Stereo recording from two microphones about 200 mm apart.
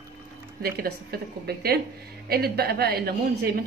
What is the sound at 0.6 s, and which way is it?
A woman's voice, 50° right (ahead or behind).